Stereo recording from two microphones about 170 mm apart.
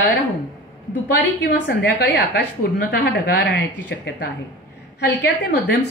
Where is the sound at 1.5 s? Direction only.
85° left.